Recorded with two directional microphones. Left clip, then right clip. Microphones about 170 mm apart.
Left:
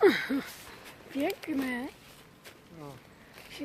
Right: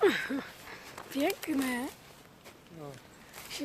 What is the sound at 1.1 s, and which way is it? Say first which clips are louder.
Speech: right 1 dB; centre (ahead or behind).